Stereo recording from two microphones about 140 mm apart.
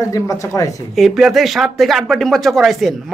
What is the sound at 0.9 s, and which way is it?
Speech, centre (ahead or behind).